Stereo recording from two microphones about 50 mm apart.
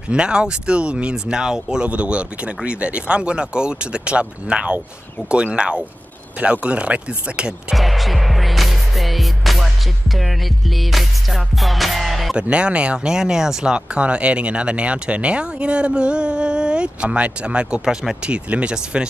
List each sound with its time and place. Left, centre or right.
0.1 s speech: centre
7.7 s music: centre
12.4 s speech: right